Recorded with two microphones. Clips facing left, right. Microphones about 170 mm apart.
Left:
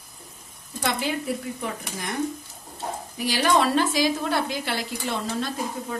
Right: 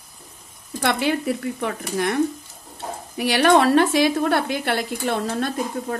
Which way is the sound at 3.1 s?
65° right (ahead or behind).